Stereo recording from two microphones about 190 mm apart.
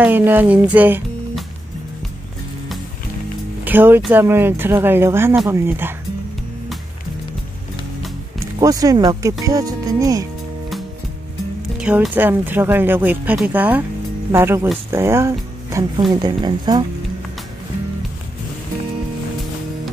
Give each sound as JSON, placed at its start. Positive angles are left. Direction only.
{"t": 0.0, "sound": "speech", "side_deg": -10}
{"t": 3.6, "sound": "speech", "side_deg": -10}
{"t": 8.5, "sound": "speech", "side_deg": -20}
{"t": 11.8, "sound": "speech", "side_deg": -5}